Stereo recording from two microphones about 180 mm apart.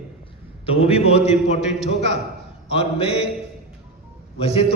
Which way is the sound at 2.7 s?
35° left (ahead or behind).